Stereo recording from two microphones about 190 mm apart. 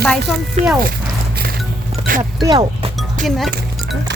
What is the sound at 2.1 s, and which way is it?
Music, 45° right (ahead or behind).